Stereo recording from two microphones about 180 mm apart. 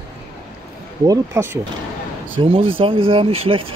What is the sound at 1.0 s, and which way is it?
Speech, 20° right (ahead or behind).